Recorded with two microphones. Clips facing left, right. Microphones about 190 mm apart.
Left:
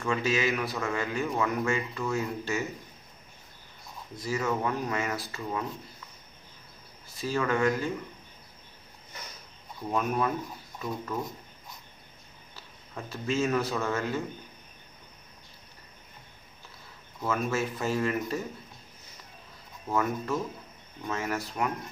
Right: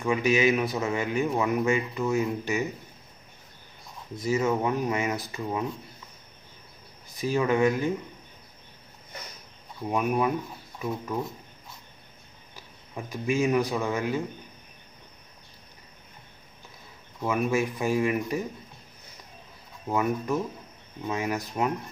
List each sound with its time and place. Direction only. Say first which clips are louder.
0.0 s speech: right 5 dB; 15° right (ahead or behind)
4.2 s speech: right 4 dB; 20° right (ahead or behind)
7.1 s speech: right 4 dB; 15° right (ahead or behind)
9.8 s speech: right 3 dB; 15° right (ahead or behind)
12.5 s a man's voice: right 3 dB; 15° right (ahead or behind)
17.2 s speech: right 4 dB; 15° right (ahead or behind)
19.9 s speech: right 3 dB; 15° right (ahead or behind)